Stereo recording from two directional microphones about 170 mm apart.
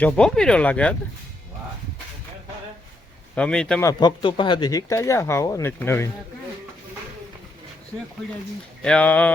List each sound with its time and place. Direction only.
0.0 s speech: 5° left (ahead or behind)
3.3 s speech: 5° left (ahead or behind)
3.8 s speech: 20° left (ahead or behind)
8.8 s speech: 5° left (ahead or behind)